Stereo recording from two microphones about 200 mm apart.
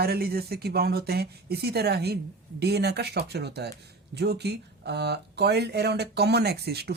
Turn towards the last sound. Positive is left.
turn(degrees=-55)  # may be behind; listen again after turning